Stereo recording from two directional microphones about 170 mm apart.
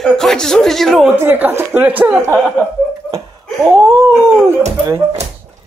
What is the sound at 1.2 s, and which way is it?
Speech, 15° right (ahead or behind).